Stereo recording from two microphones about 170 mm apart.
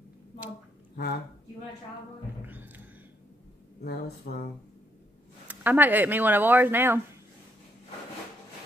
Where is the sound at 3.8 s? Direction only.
70° left (ahead or behind).